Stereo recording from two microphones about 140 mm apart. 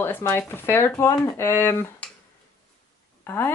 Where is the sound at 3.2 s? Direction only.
15° left (ahead or behind).